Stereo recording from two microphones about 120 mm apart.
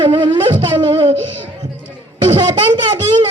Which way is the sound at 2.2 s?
40° right (ahead or behind).